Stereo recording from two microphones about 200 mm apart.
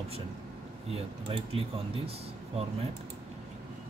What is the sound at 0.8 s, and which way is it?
Speech, 30° right (ahead or behind).